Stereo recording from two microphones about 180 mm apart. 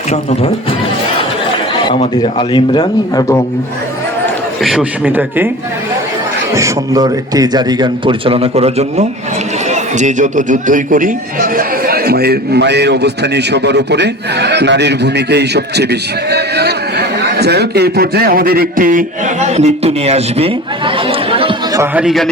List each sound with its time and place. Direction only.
0.1 s speech: 35° left (ahead or behind)
1.9 s speech: 25° left (ahead or behind)
4.6 s speech: 5° right (ahead or behind)
6.5 s a man's voice: 15° right (ahead or behind)
21.7 s a man's voice: 15° right (ahead or behind)
22.0 s a man's voice: centre (ahead or behind)